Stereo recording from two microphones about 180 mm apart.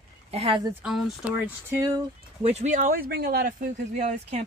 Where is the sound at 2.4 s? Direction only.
40° right (ahead or behind).